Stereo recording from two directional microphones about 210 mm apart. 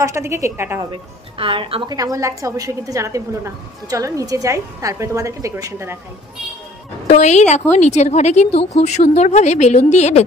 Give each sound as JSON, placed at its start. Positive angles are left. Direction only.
{"t": 0.0, "sound": "a woman's voice", "side_deg": -15}
{"t": 1.4, "sound": "a woman's voice", "side_deg": -25}
{"t": 7.1, "sound": "speech", "side_deg": 35}